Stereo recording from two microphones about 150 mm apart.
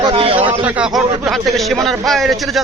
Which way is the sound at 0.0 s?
35° right (ahead or behind).